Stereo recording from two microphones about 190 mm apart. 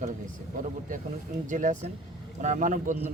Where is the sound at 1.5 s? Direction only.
40° right (ahead or behind).